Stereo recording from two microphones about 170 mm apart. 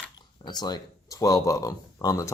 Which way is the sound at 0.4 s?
25° left (ahead or behind).